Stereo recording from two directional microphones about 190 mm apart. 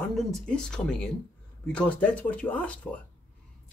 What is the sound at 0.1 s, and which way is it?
Speech, centre (ahead or behind).